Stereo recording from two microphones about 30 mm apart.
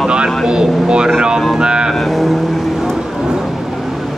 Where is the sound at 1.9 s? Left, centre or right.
Centre.